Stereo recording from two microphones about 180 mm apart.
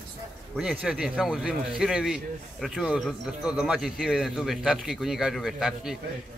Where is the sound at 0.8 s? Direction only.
5° right (ahead or behind).